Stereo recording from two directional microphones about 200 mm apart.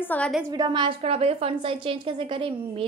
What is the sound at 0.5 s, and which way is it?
A woman's voice, 20° right (ahead or behind).